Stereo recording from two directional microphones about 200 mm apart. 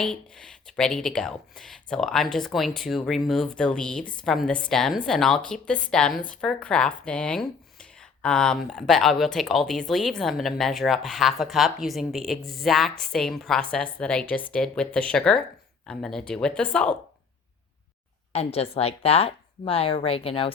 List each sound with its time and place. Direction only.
0.0 s speech: 5° left (ahead or behind)
18.3 s speech: 30° left (ahead or behind)